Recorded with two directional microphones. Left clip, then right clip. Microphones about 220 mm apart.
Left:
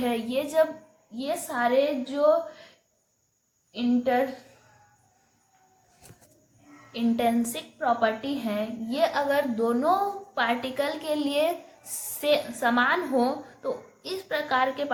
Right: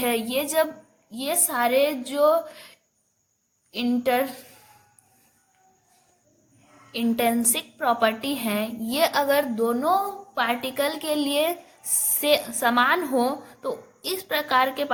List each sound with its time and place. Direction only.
0.0 s a woman's voice: 50° right (ahead or behind)
3.7 s a woman's voice: 50° right (ahead or behind)
6.9 s a woman's voice: 45° right (ahead or behind)